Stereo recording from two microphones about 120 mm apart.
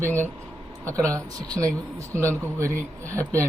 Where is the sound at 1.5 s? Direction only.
30° right (ahead or behind).